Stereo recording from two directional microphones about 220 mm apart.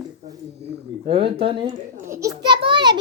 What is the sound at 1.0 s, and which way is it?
Speech, 25° right (ahead or behind).